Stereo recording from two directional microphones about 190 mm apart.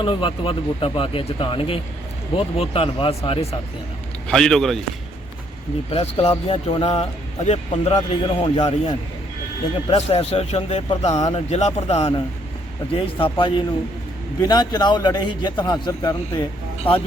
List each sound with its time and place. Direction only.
0.0 s speech: 25° left (ahead or behind)
4.3 s a man's voice: 5° left (ahead or behind)
5.9 s speech: 30° left (ahead or behind); by 17.0 s 10° left (ahead or behind)